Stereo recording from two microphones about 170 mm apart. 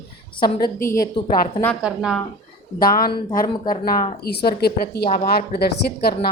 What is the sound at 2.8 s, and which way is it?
A woman's voice, 60° left (ahead or behind).